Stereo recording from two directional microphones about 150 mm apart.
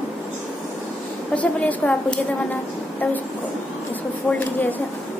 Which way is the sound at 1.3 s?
10° left (ahead or behind).